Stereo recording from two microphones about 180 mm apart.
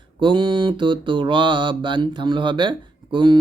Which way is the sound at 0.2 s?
25° right (ahead or behind).